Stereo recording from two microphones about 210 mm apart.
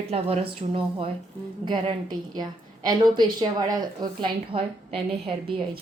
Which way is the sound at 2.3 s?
20° right (ahead or behind).